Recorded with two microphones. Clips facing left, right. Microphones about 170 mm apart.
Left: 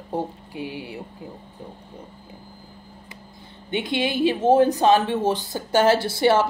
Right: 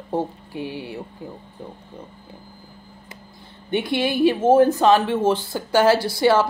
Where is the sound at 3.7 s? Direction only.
20° left (ahead or behind).